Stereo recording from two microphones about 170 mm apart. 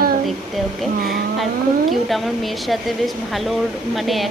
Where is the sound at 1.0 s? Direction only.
Centre (ahead or behind).